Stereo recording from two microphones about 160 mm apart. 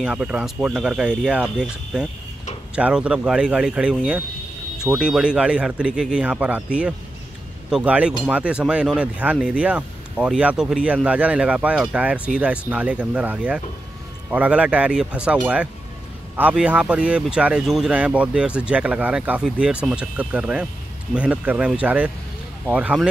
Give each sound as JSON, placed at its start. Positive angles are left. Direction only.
{"t": 0.0, "sound": "speech", "side_deg": -5}